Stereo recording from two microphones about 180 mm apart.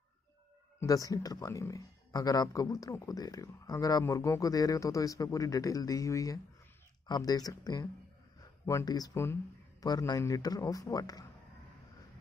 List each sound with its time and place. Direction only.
0.7 s speech: 20° left (ahead or behind)